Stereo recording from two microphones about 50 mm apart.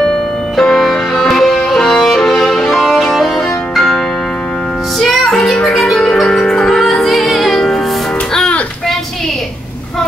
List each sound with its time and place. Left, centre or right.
0.6 s music: centre
1.8 s violin: centre
4.9 s music: centre